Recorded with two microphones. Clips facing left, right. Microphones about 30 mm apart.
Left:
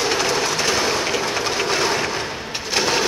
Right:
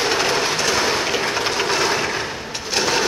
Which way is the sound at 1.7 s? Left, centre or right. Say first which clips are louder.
Right 1 dB; centre.